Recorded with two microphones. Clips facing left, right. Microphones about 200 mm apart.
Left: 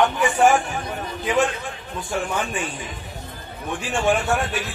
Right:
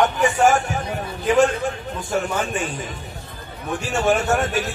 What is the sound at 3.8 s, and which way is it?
Speech, 45° right (ahead or behind).